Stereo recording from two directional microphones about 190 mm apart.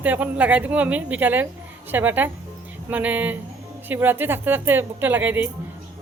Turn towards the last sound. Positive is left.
turn(degrees=-10)  # may be behind; listen again after turning